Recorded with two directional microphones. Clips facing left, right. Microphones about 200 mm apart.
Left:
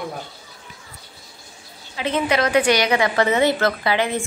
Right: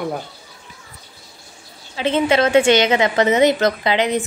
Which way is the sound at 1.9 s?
25° right (ahead or behind).